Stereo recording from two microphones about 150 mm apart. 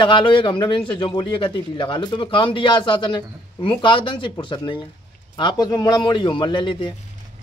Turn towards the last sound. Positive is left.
turn(degrees=35)  # may be behind; listen again after turning